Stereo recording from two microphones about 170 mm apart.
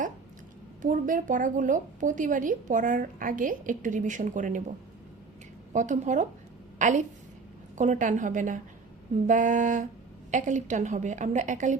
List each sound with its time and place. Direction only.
0.8 s a woman's voice: 50° right (ahead or behind)
5.7 s a woman's voice: 45° right (ahead or behind)